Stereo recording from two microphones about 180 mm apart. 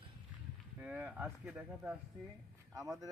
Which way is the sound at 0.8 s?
10° right (ahead or behind).